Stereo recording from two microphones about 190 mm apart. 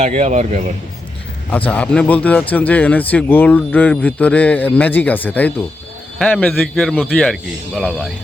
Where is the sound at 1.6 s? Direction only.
5° left (ahead or behind).